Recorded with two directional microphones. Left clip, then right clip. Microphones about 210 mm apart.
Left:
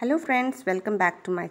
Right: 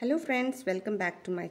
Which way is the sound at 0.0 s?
Centre (ahead or behind).